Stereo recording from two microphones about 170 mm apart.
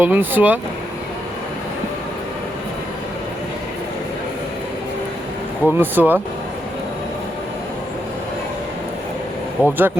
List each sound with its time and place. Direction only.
0.0 s speech: 10° right (ahead or behind)
5.6 s speech: 10° right (ahead or behind)
9.6 s speech: 10° right (ahead or behind)